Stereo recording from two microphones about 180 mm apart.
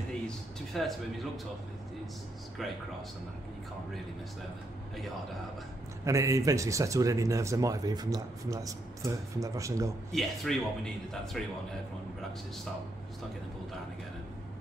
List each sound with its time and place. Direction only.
0.7 s speech: centre (ahead or behind)
2.6 s speech: centre (ahead or behind)
6.0 s speech: 15° right (ahead or behind)
10.1 s speech: centre (ahead or behind)